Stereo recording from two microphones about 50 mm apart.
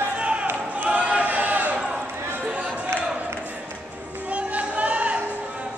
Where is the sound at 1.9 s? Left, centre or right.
Centre.